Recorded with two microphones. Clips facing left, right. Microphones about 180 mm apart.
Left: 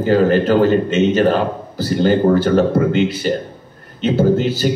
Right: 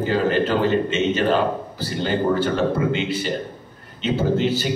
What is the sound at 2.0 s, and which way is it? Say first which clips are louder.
Speech: left 7 dB; 40° left (ahead or behind).